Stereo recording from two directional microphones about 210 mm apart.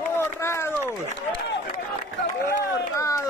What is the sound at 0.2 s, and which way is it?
Run, 10° left (ahead or behind).